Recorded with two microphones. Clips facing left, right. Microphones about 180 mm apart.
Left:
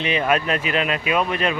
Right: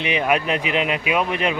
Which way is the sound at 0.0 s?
15° right (ahead or behind).